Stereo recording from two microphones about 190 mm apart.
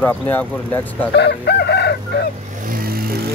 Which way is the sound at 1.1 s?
60° left (ahead or behind).